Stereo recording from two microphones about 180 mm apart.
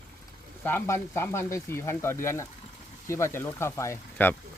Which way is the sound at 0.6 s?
15° left (ahead or behind).